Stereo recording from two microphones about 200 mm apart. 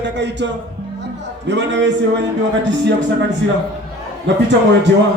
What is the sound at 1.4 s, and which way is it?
Speech, 65° right (ahead or behind).